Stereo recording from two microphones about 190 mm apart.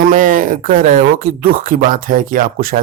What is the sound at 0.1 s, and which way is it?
Speech, 45° right (ahead or behind).